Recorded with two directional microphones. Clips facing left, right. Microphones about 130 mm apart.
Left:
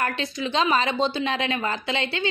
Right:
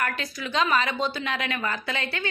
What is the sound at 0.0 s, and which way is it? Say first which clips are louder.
A woman's voice: left 3 dB; 25° left (ahead or behind).